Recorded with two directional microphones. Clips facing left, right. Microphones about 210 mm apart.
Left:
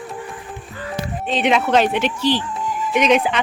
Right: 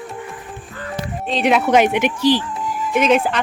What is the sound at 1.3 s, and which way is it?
Speech, centre (ahead or behind).